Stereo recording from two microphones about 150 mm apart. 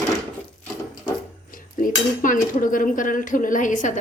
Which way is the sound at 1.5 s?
65° left (ahead or behind).